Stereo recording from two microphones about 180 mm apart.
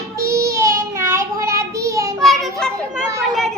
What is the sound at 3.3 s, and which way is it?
Speech, centre (ahead or behind).